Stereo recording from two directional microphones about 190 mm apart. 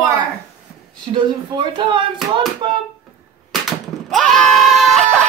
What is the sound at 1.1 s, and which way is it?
Speech, 25° right (ahead or behind).